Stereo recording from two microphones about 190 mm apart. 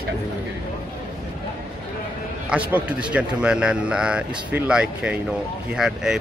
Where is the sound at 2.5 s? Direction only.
5° right (ahead or behind).